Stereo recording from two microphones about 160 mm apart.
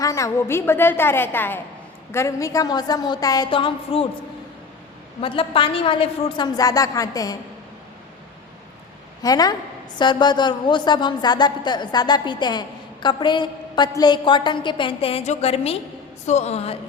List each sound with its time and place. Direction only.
0.0 s a woman's voice: 20° left (ahead or behind)
5.2 s a woman's voice: 35° left (ahead or behind)
9.2 s a woman's voice: 25° left (ahead or behind); by 16.7 s 40° left (ahead or behind)